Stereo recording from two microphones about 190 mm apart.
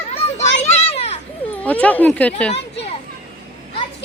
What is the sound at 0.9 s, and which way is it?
Children playing, 35° left (ahead or behind).